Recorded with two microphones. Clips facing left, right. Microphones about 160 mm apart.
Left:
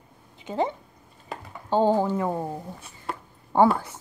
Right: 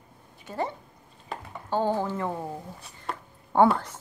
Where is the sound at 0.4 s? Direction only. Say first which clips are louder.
Left 5 dB; 20° left (ahead or behind).